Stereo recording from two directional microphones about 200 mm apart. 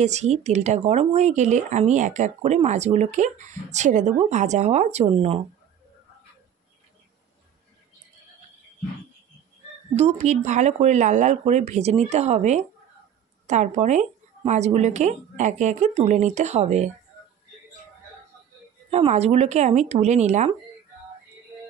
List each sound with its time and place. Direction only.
0.0 s speech: 35° right (ahead or behind)
9.9 s speech: 35° right (ahead or behind)
18.9 s speech: 30° right (ahead or behind)